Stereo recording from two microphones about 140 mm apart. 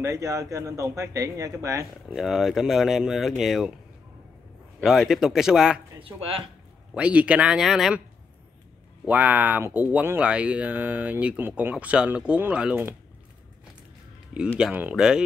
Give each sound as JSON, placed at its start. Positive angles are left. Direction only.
{"t": 0.0, "sound": "speech", "side_deg": -25}
{"t": 2.1, "sound": "speech", "side_deg": 0}
{"t": 4.7, "sound": "speech", "side_deg": 0}
{"t": 5.9, "sound": "speech", "side_deg": -40}
{"t": 6.9, "sound": "speech", "side_deg": -10}
{"t": 9.0, "sound": "speech", "side_deg": -10}
{"t": 14.6, "sound": "speech", "side_deg": -10}